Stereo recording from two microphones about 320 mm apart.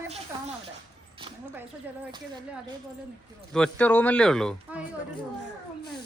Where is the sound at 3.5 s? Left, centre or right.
Centre.